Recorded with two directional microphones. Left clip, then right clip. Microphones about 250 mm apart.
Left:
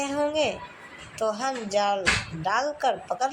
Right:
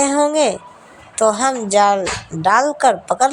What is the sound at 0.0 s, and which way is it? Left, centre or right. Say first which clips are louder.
A woman's voice: right 10 dB; right.